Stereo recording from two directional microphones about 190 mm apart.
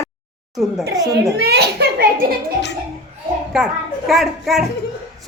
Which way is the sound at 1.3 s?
60° right (ahead or behind).